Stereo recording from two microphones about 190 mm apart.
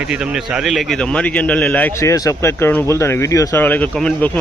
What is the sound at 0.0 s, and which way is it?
A man's voice, 5° right (ahead or behind).